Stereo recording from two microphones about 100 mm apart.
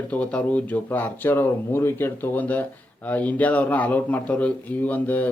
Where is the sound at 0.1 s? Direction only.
15° left (ahead or behind).